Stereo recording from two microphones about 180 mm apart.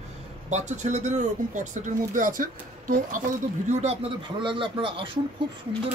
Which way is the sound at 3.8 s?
30° right (ahead or behind).